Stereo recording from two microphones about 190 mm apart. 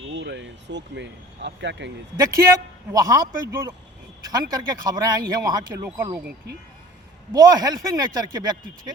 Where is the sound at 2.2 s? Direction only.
20° right (ahead or behind).